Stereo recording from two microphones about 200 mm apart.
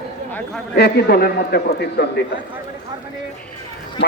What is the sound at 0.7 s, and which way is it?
A man's voice, 55° left (ahead or behind).